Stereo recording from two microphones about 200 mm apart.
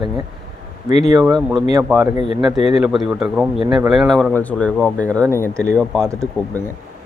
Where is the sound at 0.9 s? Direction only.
35° left (ahead or behind).